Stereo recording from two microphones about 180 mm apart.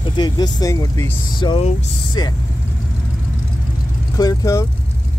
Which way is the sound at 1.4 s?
30° left (ahead or behind).